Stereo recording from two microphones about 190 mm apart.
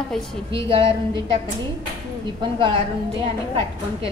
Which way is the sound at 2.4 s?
25° right (ahead or behind).